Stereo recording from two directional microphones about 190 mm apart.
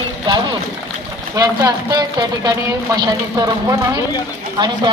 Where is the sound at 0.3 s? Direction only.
25° right (ahead or behind).